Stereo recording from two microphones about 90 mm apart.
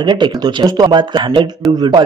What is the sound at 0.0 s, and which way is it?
A man's voice, 55° right (ahead or behind).